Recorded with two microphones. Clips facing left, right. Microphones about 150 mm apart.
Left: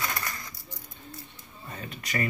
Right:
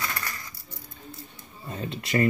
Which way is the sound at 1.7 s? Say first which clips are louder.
Right 7 dB; 25° right (ahead or behind).